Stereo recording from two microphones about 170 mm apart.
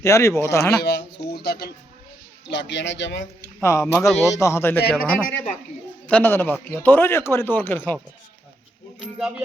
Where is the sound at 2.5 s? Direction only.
90° left.